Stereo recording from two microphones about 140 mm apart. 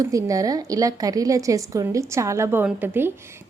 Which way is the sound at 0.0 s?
25° right (ahead or behind).